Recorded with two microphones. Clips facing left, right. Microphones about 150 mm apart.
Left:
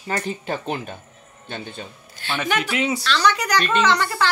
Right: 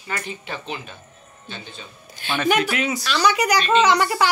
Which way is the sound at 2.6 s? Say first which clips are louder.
Left 1 dB; 25° left (ahead or behind).